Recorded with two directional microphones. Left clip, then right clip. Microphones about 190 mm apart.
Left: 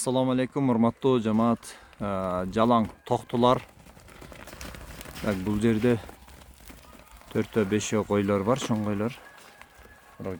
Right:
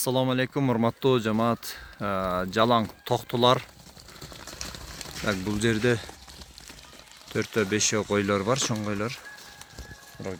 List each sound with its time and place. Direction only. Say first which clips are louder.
0.0 s speech: even; 10° left (ahead or behind)
5.2 s speech: even; 15° left (ahead or behind)
7.3 s speech: right 1 dB; 25° left (ahead or behind)
10.2 s speech: even; centre (ahead or behind)